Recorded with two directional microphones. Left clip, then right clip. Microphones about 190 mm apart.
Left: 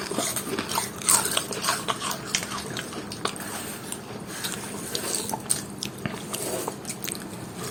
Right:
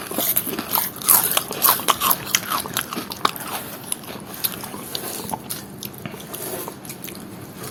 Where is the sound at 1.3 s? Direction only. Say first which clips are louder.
Right 5 dB; 25° right (ahead or behind).